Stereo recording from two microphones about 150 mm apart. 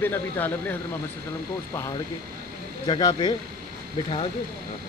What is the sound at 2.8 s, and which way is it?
Speech, 30° left (ahead or behind).